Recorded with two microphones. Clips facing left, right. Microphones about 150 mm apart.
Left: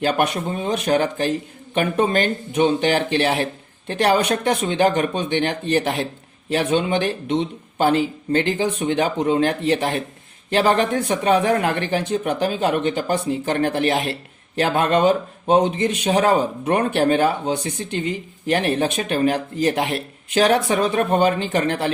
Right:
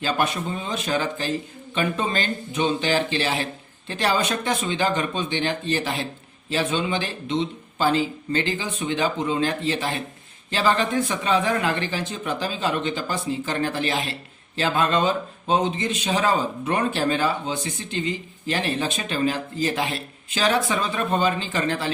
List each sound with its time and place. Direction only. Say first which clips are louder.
0.0 s speech: left 4 dB; 55° left (ahead or behind)